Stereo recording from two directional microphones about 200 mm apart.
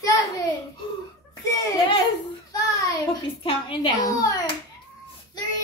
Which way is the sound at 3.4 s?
25° left (ahead or behind).